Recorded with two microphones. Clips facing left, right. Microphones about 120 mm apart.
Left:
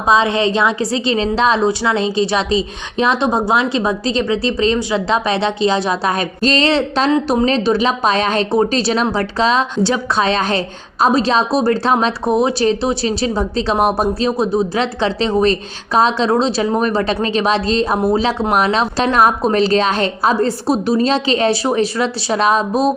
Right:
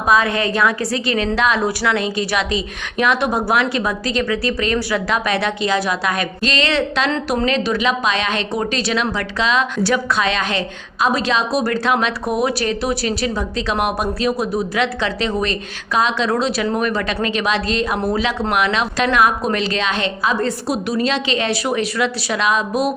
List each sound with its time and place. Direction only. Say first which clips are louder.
0.1 s a woman's voice: left 3 dB; 25° left (ahead or behind)